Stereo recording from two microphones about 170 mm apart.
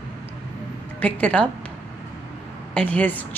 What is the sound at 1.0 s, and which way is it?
Speech, 5° left (ahead or behind).